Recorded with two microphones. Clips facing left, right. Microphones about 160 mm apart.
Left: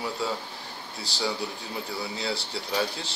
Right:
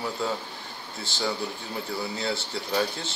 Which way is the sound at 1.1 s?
35° left (ahead or behind).